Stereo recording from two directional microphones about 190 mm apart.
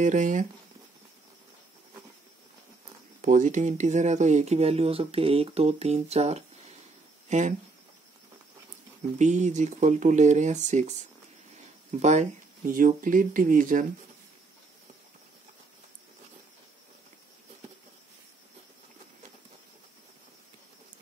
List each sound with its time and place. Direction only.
0.0 s speech: 40° right (ahead or behind)
3.2 s speech: 40° right (ahead or behind)
9.2 s speech: 40° right (ahead or behind)